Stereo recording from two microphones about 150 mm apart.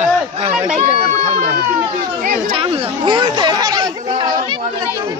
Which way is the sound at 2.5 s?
35° right (ahead or behind).